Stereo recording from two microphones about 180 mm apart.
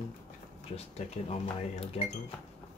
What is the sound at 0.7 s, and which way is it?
Speech, 35° left (ahead or behind).